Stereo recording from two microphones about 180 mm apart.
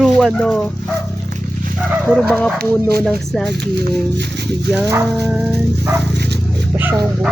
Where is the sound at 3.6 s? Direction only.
65° right (ahead or behind).